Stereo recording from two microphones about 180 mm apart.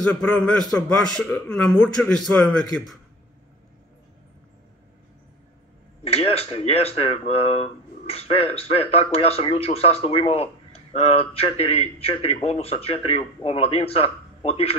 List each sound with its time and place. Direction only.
0.2 s a man's voice: 5° left (ahead or behind)
6.1 s speech: 35° left (ahead or behind)